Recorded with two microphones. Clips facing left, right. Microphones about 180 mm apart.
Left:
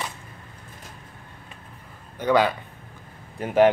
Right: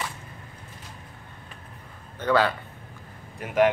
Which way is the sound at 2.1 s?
15° left (ahead or behind).